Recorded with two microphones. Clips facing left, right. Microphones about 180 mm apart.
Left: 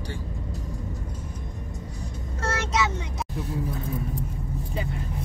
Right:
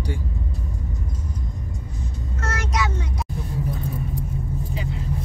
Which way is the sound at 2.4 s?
30° left (ahead or behind).